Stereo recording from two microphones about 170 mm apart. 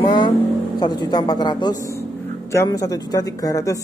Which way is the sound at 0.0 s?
25° left (ahead or behind).